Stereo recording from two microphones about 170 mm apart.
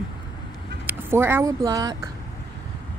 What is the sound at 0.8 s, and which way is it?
Speech, 15° right (ahead or behind).